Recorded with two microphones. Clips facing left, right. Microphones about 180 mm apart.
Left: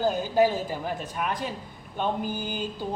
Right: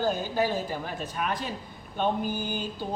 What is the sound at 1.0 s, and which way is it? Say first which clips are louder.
Speech: left 1 dB; 15° left (ahead or behind).